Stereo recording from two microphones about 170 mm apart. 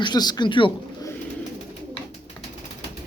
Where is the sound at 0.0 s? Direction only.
25° left (ahead or behind).